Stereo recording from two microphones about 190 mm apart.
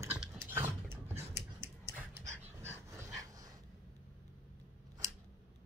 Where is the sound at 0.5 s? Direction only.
10° right (ahead or behind).